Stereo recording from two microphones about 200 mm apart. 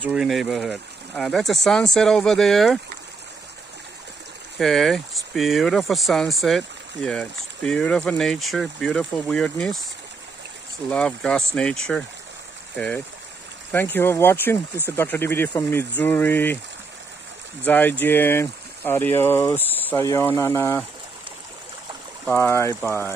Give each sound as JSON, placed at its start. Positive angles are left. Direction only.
{"t": 0.0, "sound": "speech", "side_deg": -5}
{"t": 4.6, "sound": "speech", "side_deg": 0}
{"t": 10.9, "sound": "speech", "side_deg": 5}
{"t": 17.6, "sound": "speech", "side_deg": 10}
{"t": 22.2, "sound": "speech", "side_deg": 10}